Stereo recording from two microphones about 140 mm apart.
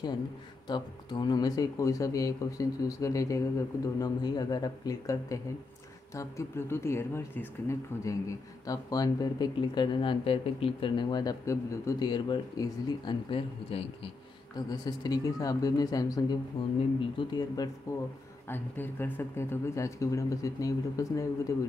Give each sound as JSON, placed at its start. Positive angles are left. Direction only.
{"t": 0.7, "sound": "speech", "side_deg": 30}
{"t": 14.7, "sound": "speech", "side_deg": 30}
{"t": 16.6, "sound": "speech", "side_deg": 40}
{"t": 17.2, "sound": "speech", "side_deg": 30}